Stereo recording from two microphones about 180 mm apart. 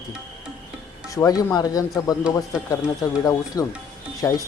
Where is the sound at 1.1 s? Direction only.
20° left (ahead or behind).